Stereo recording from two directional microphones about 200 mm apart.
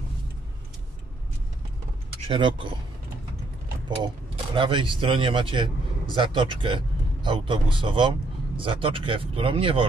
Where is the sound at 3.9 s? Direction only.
25° right (ahead or behind).